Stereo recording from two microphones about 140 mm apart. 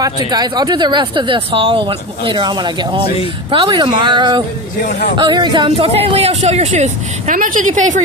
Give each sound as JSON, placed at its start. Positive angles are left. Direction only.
{"t": 0.3, "sound": "speech", "side_deg": -30}